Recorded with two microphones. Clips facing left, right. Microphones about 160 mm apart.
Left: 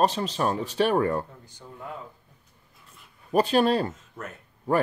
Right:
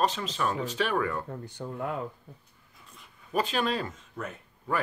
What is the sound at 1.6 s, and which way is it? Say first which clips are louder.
Speech: right 6 dB; 65° right (ahead or behind).